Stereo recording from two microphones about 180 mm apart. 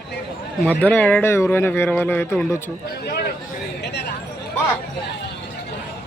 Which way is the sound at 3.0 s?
60° left (ahead or behind).